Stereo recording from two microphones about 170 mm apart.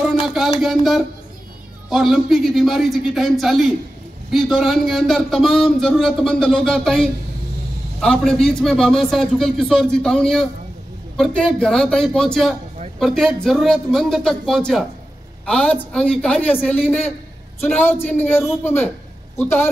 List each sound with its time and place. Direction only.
0.0 s a sound: centre (ahead or behind)
0.6 s a woman's voice: centre (ahead or behind)
17.6 s a woman's voice: 10° left (ahead or behind)